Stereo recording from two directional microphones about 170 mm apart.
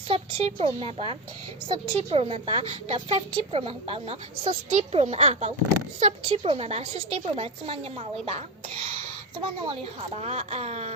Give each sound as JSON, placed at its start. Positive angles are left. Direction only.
{"t": 0.1, "sound": "a woman's voice", "side_deg": -35}